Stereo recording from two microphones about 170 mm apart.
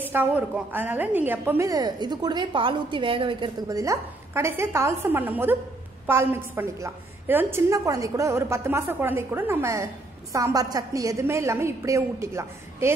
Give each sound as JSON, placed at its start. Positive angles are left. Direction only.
{"t": 0.0, "sound": "a woman's voice", "side_deg": -10}